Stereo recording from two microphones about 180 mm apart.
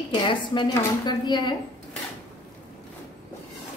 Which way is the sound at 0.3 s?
25° left (ahead or behind).